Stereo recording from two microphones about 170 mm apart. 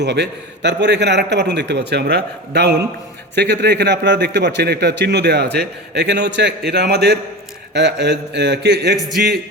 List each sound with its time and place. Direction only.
0.0 s a man's voice: 90° right; by 7.2 s 70° right (ahead or behind)
7.7 s a man's voice: 90° right